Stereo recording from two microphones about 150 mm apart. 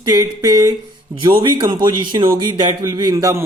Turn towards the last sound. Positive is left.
turn(degrees=-25)  # may be behind; listen again after turning